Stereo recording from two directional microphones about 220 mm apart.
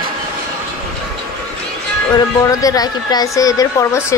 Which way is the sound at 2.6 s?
15° left (ahead or behind).